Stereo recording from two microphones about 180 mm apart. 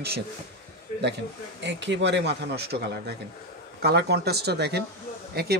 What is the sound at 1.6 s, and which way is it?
Speech, 75° right (ahead or behind).